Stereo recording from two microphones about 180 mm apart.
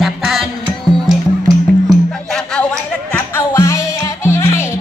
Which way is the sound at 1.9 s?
5° left (ahead or behind).